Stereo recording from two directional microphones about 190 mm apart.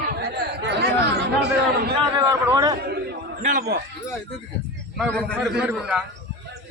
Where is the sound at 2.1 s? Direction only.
20° right (ahead or behind).